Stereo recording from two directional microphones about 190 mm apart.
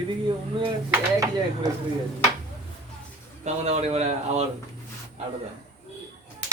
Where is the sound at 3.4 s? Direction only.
35° right (ahead or behind).